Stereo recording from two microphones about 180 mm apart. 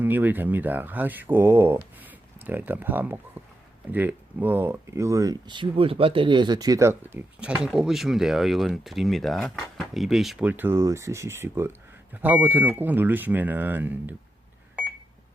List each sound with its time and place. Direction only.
0.0 s speech: 10° right (ahead or behind)
3.4 s a sound: 10° right (ahead or behind)
3.9 s speech: 10° right (ahead or behind)